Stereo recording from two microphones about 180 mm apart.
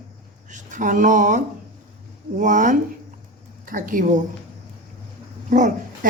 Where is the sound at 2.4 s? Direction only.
45° right (ahead or behind).